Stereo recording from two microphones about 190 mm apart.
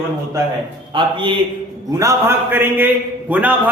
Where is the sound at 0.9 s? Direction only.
25° right (ahead or behind).